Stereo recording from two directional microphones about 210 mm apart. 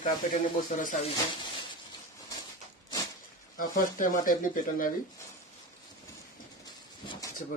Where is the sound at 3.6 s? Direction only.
40° left (ahead or behind).